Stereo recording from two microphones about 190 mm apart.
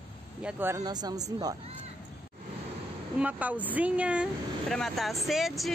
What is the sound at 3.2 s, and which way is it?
A woman's voice, 10° right (ahead or behind).